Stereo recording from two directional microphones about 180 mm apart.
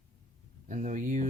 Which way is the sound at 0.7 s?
45° right (ahead or behind).